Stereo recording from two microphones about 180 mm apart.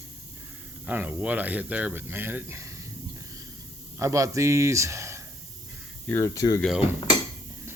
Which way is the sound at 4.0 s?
15° right (ahead or behind).